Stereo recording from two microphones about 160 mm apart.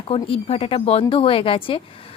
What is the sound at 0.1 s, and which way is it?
A woman's voice, 35° left (ahead or behind).